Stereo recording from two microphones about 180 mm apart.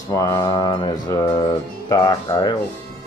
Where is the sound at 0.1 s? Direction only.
20° left (ahead or behind).